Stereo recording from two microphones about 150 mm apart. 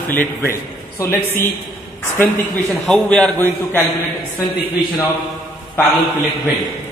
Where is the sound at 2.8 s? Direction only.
5° left (ahead or behind).